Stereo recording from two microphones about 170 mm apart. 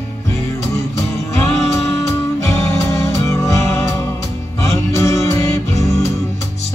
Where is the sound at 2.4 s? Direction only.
15° left (ahead or behind).